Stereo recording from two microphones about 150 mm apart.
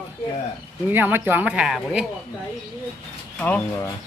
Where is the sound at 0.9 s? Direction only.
15° right (ahead or behind).